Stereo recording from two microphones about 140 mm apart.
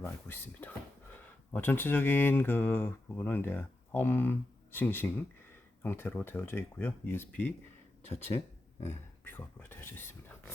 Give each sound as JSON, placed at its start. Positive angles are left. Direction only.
{"t": 0.0, "sound": "speech", "side_deg": 15}
{"t": 8.8, "sound": "speech", "side_deg": 15}